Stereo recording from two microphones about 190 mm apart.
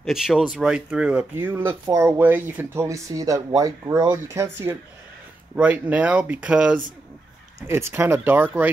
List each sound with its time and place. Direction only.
0.0 s speech: centre (ahead or behind)